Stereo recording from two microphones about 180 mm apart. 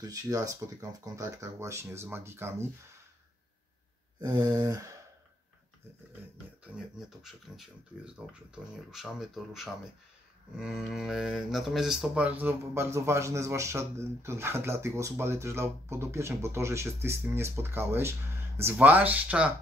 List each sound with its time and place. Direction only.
0.0 s speech: 20° right (ahead or behind)
4.2 s a sound: 20° right (ahead or behind)
6.6 s speech: centre (ahead or behind)